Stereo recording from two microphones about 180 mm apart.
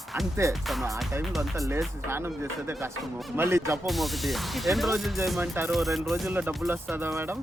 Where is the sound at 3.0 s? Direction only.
Centre (ahead or behind).